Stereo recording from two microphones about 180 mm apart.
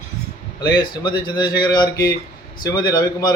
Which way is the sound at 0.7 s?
25° left (ahead or behind).